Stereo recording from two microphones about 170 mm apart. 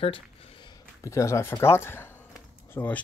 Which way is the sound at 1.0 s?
15° left (ahead or behind).